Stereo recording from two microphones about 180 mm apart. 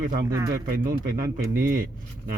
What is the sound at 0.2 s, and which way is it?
Speech, 20° right (ahead or behind).